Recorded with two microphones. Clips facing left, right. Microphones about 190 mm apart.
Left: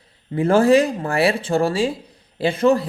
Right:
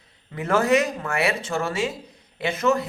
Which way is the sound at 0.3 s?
30° left (ahead or behind).